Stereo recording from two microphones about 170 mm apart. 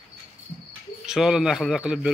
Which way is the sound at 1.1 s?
5° right (ahead or behind).